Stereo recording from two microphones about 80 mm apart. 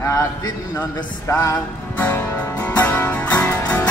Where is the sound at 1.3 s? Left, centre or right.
Left.